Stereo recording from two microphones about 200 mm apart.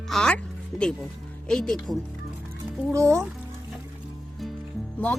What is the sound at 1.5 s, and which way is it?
Speech, 5° left (ahead or behind).